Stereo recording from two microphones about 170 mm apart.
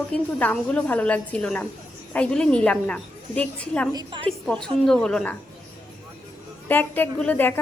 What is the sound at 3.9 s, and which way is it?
Speech, 30° right (ahead or behind).